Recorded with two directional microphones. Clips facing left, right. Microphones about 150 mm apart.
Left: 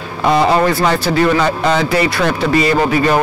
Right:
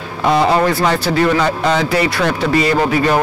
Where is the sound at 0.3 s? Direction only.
15° left (ahead or behind).